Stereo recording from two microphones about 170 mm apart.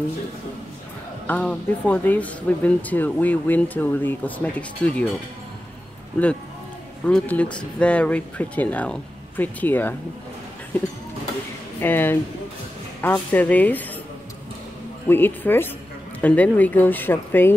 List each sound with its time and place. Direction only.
1.2 s speech: 10° left (ahead or behind)
7.1 s speech: 5° left (ahead or behind)
11.8 s speech: 10° left (ahead or behind)
15.0 s speech: 10° left (ahead or behind)